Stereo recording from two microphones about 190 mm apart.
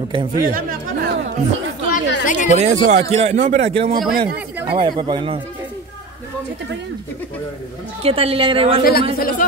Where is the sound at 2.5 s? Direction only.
40° right (ahead or behind).